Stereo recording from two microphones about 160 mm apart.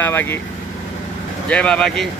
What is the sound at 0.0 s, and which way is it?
Speech, 15° left (ahead or behind).